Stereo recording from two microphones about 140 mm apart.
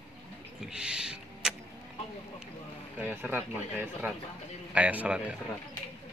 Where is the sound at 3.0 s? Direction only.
15° right (ahead or behind).